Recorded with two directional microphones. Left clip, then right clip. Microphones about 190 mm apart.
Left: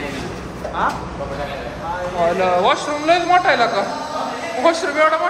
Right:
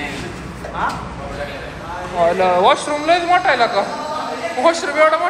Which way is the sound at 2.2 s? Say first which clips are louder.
Right 3 dB; 10° left (ahead or behind).